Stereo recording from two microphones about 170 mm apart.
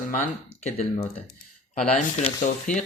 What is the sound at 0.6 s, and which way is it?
Speech, 40° left (ahead or behind).